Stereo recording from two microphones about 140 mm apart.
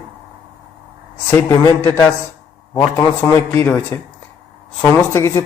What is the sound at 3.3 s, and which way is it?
Speech, 15° left (ahead or behind).